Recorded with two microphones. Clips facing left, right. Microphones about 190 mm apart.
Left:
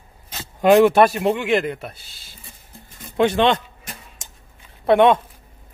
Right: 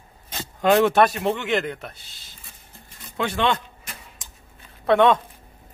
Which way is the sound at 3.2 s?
20° left (ahead or behind).